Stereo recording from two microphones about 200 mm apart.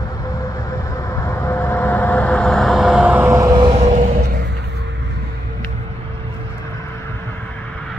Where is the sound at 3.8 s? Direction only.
40° right (ahead or behind).